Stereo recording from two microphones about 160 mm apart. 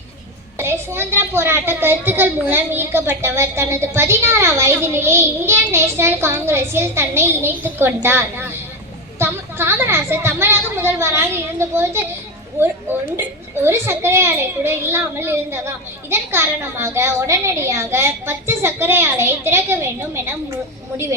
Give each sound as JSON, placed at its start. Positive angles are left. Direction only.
{"t": 0.6, "sound": "a child's voice", "side_deg": -15}